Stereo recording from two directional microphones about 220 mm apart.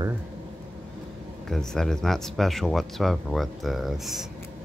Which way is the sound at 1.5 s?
Centre (ahead or behind).